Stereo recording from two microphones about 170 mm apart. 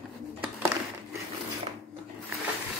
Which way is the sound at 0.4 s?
15° right (ahead or behind).